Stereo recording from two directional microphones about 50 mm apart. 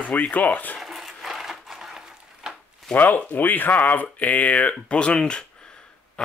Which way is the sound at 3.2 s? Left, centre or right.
Left.